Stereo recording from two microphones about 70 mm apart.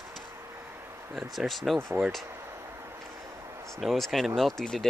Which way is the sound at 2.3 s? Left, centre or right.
Right.